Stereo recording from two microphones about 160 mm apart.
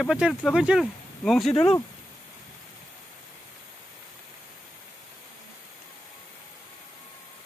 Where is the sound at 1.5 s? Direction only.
35° left (ahead or behind).